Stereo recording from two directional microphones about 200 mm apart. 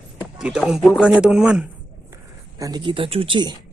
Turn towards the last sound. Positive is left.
turn(degrees=-25)  # may be behind; listen again after turning